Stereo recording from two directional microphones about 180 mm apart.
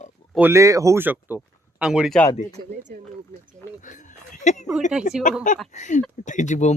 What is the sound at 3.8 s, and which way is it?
Speech, 45° left (ahead or behind).